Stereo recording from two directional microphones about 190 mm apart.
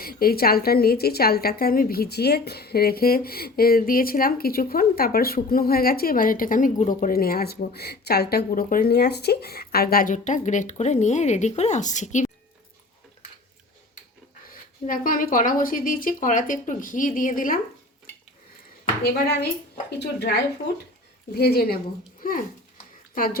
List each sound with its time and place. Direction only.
0.0 s a woman's voice: 50° left (ahead or behind)
14.8 s a woman's voice: 45° left (ahead or behind)
19.0 s speech: 55° left (ahead or behind)
21.3 s a woman's voice: 55° left (ahead or behind)